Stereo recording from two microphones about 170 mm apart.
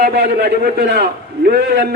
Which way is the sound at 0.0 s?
65° right (ahead or behind).